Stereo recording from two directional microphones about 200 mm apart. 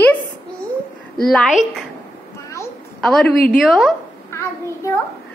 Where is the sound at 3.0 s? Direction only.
5° left (ahead or behind).